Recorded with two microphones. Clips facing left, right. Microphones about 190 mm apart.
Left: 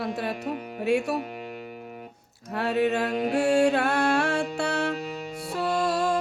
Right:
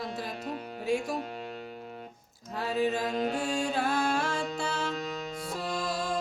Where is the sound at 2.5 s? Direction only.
70° left (ahead or behind).